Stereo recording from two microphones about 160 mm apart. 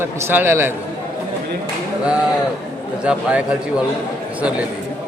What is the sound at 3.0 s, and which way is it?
Speech, 5° right (ahead or behind).